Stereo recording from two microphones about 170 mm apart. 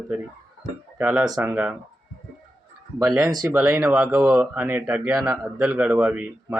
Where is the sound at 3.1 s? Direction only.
20° right (ahead or behind).